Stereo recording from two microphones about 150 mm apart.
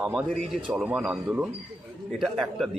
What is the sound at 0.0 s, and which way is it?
A man's voice, 5° right (ahead or behind).